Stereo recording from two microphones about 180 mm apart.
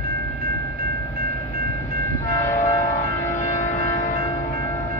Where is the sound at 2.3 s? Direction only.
45° left (ahead or behind).